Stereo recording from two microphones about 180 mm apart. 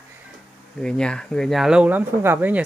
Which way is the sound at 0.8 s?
5° left (ahead or behind).